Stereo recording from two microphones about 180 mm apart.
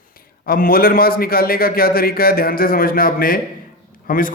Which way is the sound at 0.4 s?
55° left (ahead or behind).